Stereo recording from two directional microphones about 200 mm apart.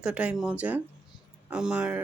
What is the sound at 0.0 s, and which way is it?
Speech, 5° right (ahead or behind).